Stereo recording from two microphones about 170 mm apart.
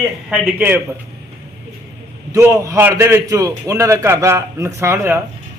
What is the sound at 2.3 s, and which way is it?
A man's voice, 15° right (ahead or behind).